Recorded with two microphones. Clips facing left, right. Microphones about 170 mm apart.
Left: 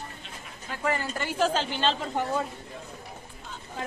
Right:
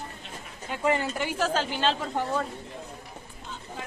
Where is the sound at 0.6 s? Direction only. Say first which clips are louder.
Right 3 dB; 20° right (ahead or behind).